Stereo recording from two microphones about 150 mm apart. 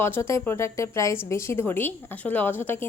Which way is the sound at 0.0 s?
15° left (ahead or behind).